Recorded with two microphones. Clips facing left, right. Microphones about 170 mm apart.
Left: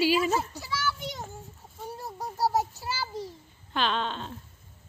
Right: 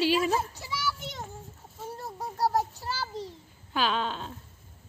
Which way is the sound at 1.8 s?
Centre (ahead or behind).